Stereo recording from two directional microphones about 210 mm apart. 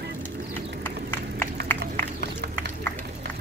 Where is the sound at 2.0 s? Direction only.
55° right (ahead or behind).